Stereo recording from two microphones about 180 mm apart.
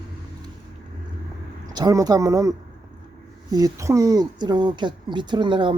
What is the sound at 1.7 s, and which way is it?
A woman's voice, 20° right (ahead or behind).